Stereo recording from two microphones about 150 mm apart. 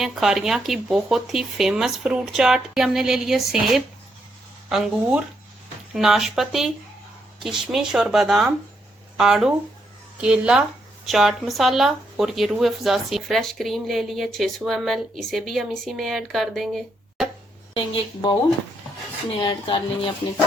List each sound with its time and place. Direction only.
0.0 s speech: centre (ahead or behind)
17.7 s speech: 30° left (ahead or behind)
19.4 s speech: 35° left (ahead or behind)